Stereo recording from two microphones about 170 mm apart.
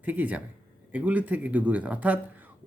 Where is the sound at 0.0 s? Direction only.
10° right (ahead or behind).